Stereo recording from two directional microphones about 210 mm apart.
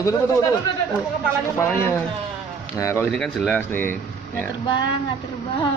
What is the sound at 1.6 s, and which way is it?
Speech, 10° left (ahead or behind).